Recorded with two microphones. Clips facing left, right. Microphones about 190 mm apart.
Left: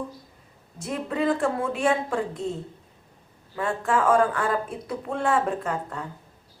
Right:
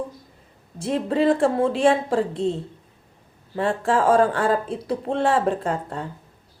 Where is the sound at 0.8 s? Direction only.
30° right (ahead or behind).